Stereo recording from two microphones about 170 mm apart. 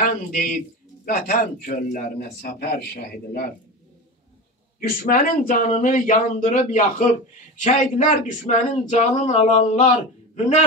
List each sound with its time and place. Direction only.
0.0 s a man's voice: 55° left (ahead or behind); by 3.5 s 70° left (ahead or behind)
4.7 s speech: 55° left (ahead or behind)